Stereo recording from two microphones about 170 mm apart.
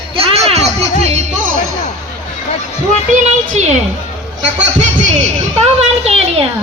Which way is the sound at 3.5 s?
40° right (ahead or behind).